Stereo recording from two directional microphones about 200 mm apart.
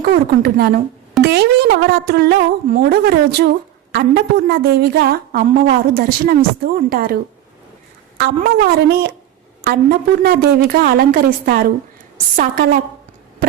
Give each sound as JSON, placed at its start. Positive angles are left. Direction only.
{"t": 0.0, "sound": "a woman's voice", "side_deg": -50}
{"t": 8.4, "sound": "a woman's voice", "side_deg": -50}